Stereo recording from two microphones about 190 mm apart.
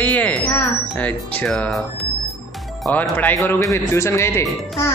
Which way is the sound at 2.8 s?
10° left (ahead or behind).